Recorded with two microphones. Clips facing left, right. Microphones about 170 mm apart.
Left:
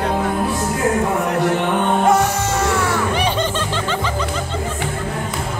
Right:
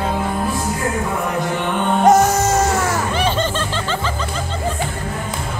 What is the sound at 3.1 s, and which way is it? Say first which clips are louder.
Music: even; 15° left (ahead or behind).